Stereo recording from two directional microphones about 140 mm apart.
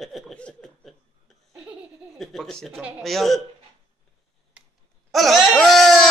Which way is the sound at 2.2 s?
Centre (ahead or behind).